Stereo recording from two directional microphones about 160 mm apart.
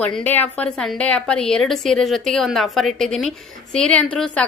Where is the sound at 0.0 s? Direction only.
10° left (ahead or behind).